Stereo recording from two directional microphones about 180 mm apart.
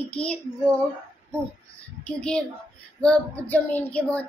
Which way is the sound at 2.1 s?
5° left (ahead or behind).